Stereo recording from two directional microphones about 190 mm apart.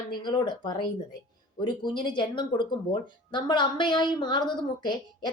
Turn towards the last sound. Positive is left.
turn(degrees=25)  # may be behind; listen again after turning